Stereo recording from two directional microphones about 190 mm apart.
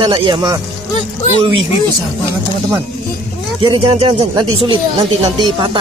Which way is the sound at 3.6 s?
30° right (ahead or behind).